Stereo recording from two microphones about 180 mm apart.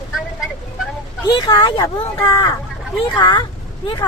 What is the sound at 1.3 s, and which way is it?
A woman's voice, 20° left (ahead or behind).